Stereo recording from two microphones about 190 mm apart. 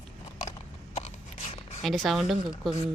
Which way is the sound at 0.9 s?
35° left (ahead or behind).